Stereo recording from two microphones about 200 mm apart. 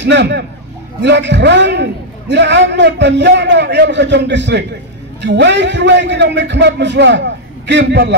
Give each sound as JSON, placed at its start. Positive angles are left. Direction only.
{"t": 0.0, "sound": "a man's voice", "side_deg": -60}